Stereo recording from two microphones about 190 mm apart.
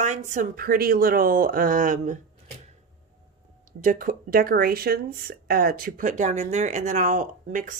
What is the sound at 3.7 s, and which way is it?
Speech, 45° right (ahead or behind).